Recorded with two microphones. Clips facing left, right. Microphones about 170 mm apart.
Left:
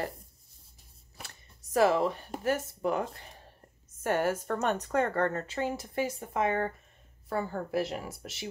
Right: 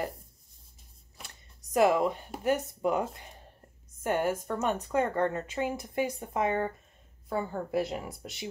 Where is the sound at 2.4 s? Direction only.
20° right (ahead or behind).